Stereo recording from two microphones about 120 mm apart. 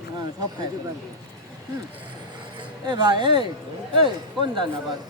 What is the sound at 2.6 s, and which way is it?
Speech, 40° right (ahead or behind).